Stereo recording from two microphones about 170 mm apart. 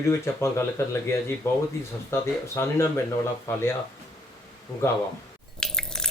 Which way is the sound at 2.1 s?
15° left (ahead or behind).